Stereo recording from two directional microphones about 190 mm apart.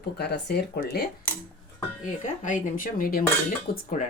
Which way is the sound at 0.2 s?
60° left (ahead or behind).